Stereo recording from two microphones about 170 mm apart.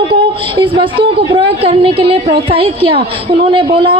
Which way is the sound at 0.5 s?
30° right (ahead or behind).